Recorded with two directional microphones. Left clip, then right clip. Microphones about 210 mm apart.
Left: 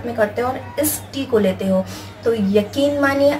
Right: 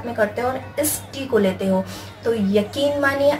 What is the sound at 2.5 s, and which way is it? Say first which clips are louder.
Speech: left 2 dB; 5° right (ahead or behind).